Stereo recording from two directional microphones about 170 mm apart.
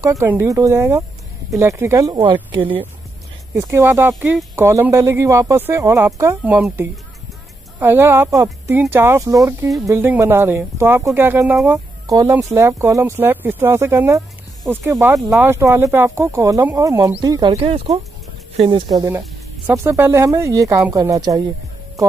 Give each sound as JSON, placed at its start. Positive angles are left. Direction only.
{"t": 0.0, "sound": "speech", "side_deg": -15}
{"t": 3.5, "sound": "speech", "side_deg": -15}